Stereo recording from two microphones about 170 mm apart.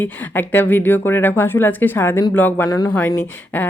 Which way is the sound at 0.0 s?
10° left (ahead or behind).